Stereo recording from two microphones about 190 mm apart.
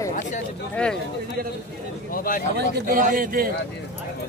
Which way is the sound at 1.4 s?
50° right (ahead or behind).